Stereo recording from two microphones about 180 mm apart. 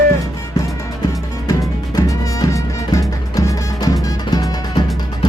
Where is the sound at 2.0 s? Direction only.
20° left (ahead or behind).